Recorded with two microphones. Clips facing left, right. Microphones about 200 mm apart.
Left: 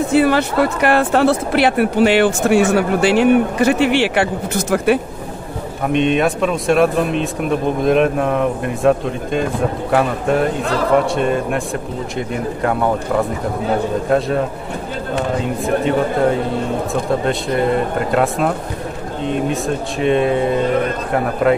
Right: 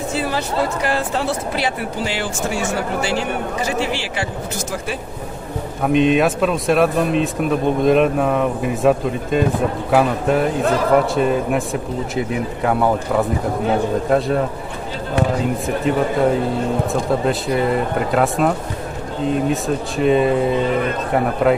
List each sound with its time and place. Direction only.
0.1 s speech: 65° left (ahead or behind)
5.9 s speech: centre (ahead or behind)